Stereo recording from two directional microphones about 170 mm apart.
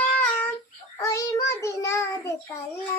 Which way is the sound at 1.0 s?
20° left (ahead or behind).